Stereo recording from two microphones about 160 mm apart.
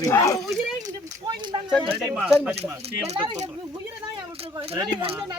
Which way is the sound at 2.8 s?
40° right (ahead or behind).